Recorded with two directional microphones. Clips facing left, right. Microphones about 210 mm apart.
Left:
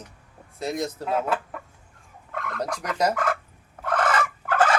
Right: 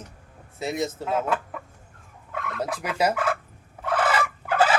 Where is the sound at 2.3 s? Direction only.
5° right (ahead or behind).